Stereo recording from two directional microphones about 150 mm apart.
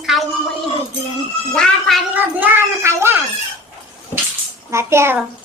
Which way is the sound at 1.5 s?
5° left (ahead or behind).